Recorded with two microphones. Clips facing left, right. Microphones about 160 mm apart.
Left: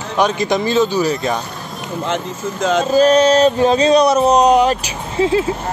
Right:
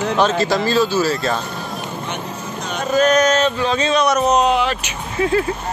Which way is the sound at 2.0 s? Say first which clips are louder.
Left 6 dB; 90° left.